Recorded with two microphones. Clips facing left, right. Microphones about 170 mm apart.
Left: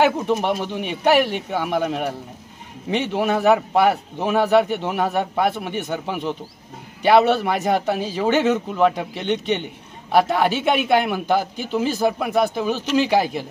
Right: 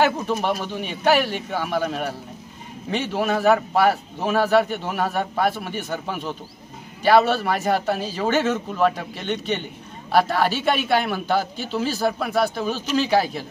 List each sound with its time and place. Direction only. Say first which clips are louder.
0.0 s a man's voice: left 2 dB; 20° left (ahead or behind)